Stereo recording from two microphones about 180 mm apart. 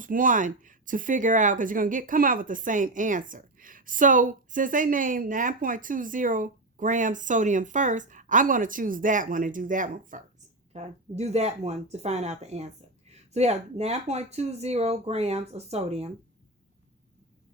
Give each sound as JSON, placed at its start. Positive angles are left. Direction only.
{"t": 0.0, "sound": "speech", "side_deg": -50}